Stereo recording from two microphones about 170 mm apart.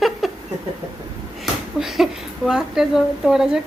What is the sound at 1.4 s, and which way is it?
Speech, centre (ahead or behind).